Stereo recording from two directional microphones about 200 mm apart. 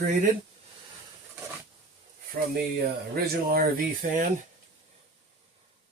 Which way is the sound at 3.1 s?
50° right (ahead or behind).